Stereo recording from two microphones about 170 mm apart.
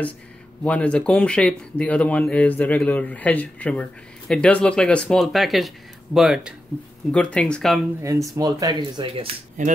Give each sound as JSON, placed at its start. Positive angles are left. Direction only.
{"t": 0.7, "sound": "speech", "side_deg": 5}
{"t": 8.4, "sound": "speech", "side_deg": -20}